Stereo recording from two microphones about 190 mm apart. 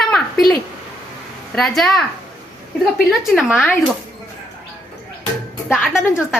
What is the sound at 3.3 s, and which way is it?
Speech, centre (ahead or behind).